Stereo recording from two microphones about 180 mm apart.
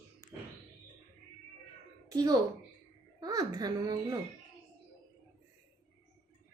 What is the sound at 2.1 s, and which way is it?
A woman's voice, 20° right (ahead or behind).